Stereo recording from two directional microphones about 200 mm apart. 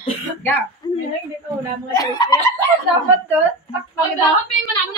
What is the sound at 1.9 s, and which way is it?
Speech, 20° left (ahead or behind).